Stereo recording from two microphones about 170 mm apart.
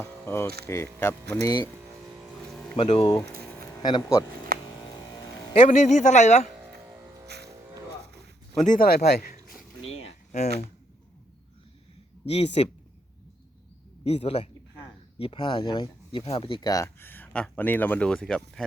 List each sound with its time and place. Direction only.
0.0 s speech: 15° left (ahead or behind)
2.7 s speech: 40° left (ahead or behind)
3.0 s speech: 20° left (ahead or behind)
4.5 s a sound: 60° right (ahead or behind)
5.6 s speech: 40° left (ahead or behind)
7.3 s music: 75° right (ahead or behind)
8.6 s speech: 55° left (ahead or behind)
9.8 s a sound: 35° left (ahead or behind)
12.3 s speech: 35° left (ahead or behind)
14.0 s speech: 35° left (ahead or behind); by 18.6 s 5° left (ahead or behind)